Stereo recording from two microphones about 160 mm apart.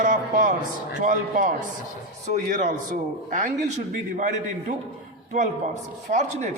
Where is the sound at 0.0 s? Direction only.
55° right (ahead or behind).